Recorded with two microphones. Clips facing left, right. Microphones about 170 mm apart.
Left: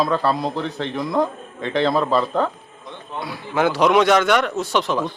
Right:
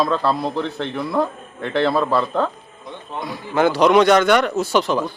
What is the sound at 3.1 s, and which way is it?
A man's voice, 5° left (ahead or behind).